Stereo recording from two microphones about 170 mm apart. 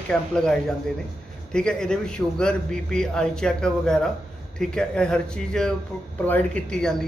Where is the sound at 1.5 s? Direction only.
5° left (ahead or behind).